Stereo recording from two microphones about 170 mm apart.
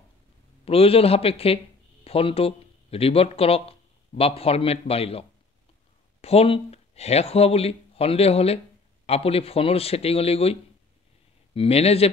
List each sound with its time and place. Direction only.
0.7 s speech: 35° left (ahead or behind)
6.2 s speech: 35° left (ahead or behind)